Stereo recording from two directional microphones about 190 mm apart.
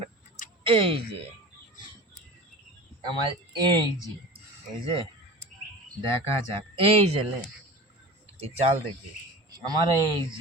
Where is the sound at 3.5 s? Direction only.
20° right (ahead or behind).